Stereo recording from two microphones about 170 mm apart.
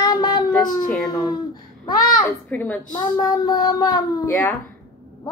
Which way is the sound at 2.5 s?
10° left (ahead or behind).